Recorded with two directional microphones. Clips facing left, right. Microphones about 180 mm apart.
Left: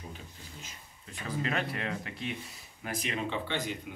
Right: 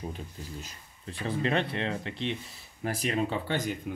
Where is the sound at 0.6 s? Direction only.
35° right (ahead or behind).